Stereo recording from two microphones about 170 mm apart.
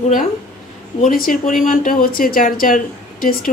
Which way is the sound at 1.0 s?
55° left (ahead or behind).